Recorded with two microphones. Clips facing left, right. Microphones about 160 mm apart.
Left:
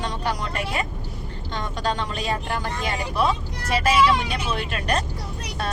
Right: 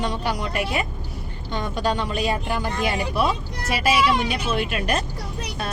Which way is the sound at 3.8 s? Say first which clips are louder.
Even; 5° right (ahead or behind).